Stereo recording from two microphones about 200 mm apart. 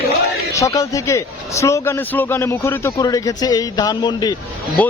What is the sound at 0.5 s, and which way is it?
A man's voice, 15° left (ahead or behind).